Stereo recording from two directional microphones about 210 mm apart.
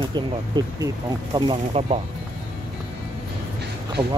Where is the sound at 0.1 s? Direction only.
20° right (ahead or behind).